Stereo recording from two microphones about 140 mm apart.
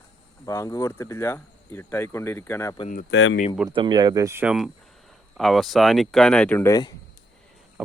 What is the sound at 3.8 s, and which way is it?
Speech, 30° right (ahead or behind).